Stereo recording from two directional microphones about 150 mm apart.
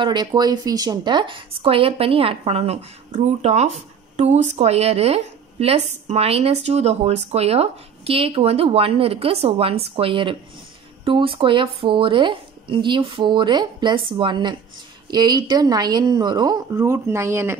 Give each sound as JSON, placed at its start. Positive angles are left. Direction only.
{"t": 0.0, "sound": "a woman's voice", "side_deg": -30}